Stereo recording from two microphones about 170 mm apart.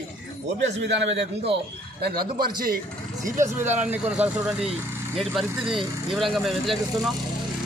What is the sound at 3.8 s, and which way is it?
Speech, 10° right (ahead or behind).